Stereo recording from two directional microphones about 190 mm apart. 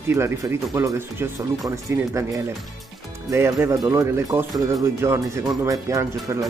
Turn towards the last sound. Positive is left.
turn(degrees=-15)  # may be behind; listen again after turning